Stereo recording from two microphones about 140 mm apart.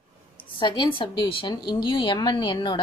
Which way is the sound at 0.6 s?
35° left (ahead or behind).